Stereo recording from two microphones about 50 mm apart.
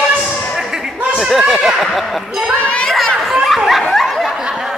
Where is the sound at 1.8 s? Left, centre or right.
Centre.